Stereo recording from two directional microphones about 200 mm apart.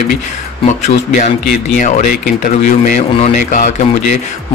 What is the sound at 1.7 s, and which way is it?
Speech, 40° left (ahead or behind).